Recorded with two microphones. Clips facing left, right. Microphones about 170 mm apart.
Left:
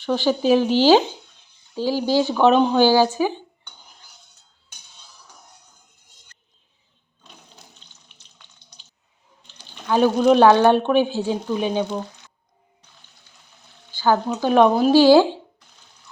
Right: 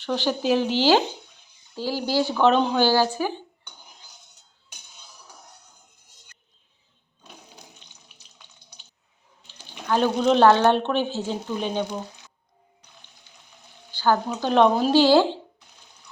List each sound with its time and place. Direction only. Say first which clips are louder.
0.0 s speech: left 5 dB; 10° left (ahead or behind)
9.9 s speech: left 4 dB; 10° left (ahead or behind)
13.9 s speech: left 3 dB; 10° left (ahead or behind)